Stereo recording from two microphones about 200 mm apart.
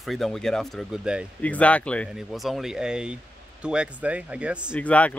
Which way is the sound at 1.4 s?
5° left (ahead or behind).